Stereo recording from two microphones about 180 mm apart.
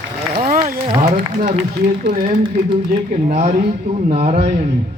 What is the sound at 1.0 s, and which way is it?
A man's voice, 40° right (ahead or behind).